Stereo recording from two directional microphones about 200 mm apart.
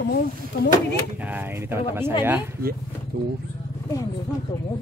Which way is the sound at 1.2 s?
10° right (ahead or behind).